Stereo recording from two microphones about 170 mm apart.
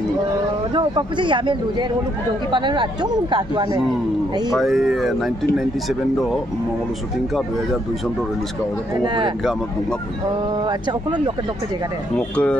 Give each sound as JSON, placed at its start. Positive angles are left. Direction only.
{"t": 0.7, "sound": "speech", "side_deg": -30}
{"t": 4.5, "sound": "speech", "side_deg": 0}
{"t": 9.0, "sound": "speech", "side_deg": -30}
{"t": 9.4, "sound": "speech", "side_deg": 0}
{"t": 10.5, "sound": "speech", "side_deg": -25}
{"t": 12.2, "sound": "speech", "side_deg": 5}